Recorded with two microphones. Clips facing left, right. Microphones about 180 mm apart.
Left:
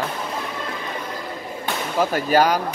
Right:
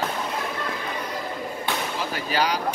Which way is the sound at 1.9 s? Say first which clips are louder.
Left 11 dB; 45° left (ahead or behind).